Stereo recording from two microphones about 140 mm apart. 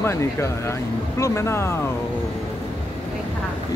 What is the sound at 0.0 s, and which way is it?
Speech, 20° left (ahead or behind).